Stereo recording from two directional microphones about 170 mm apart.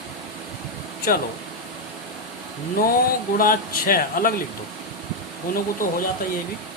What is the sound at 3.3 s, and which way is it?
Speech, 55° left (ahead or behind).